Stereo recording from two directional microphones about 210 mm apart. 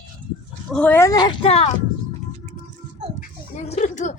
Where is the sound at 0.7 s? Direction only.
5° left (ahead or behind); by 1.7 s 30° left (ahead or behind).